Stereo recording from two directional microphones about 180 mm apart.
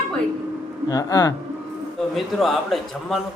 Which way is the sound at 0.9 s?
20° left (ahead or behind).